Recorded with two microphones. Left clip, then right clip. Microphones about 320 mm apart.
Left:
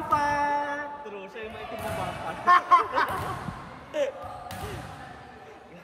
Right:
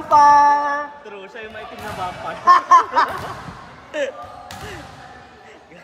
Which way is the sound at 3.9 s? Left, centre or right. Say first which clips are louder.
Right 4 dB; right.